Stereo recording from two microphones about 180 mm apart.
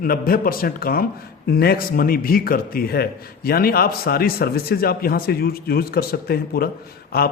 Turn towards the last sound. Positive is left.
turn(degrees=60)  # may be behind; listen again after turning